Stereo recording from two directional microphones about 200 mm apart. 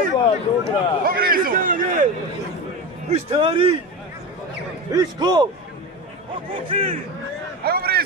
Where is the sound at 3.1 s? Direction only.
30° right (ahead or behind).